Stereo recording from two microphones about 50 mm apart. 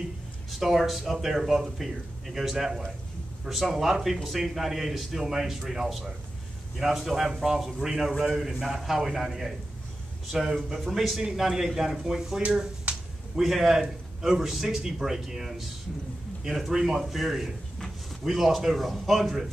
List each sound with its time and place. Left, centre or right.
0.5 s a man's voice: centre
12.9 s finger snapping: right
13.4 s a man's voice: centre